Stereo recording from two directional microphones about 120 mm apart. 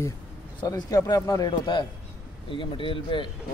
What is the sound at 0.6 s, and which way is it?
Speech, 35° left (ahead or behind).